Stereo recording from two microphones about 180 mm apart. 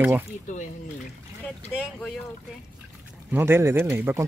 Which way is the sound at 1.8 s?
Centre (ahead or behind).